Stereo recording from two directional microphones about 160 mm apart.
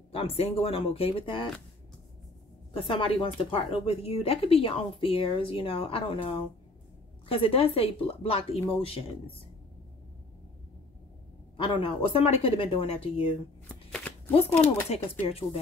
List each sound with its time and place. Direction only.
0.1 s speech: 40° left (ahead or behind)
2.7 s speech: 35° left (ahead or behind)
11.5 s speech: 35° left (ahead or behind)
13.7 s shuffling cards: 5° left (ahead or behind)
14.9 s speech: 40° left (ahead or behind)